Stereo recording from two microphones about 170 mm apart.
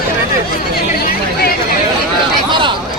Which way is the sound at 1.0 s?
65° left (ahead or behind).